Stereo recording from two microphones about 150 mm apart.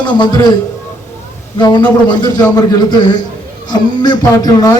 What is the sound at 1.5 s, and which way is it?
A man's voice, 30° left (ahead or behind).